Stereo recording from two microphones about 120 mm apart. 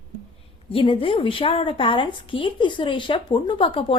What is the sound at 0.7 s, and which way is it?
A woman's voice, 50° left (ahead or behind).